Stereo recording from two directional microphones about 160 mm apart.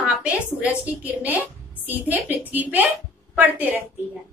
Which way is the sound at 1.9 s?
10° right (ahead or behind).